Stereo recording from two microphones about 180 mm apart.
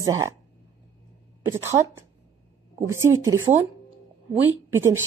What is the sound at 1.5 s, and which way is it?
A woman's voice, 15° right (ahead or behind).